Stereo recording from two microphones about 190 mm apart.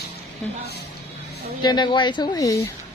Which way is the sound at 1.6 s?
25° left (ahead or behind).